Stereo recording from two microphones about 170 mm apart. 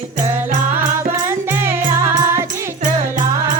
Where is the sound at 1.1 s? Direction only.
15° right (ahead or behind).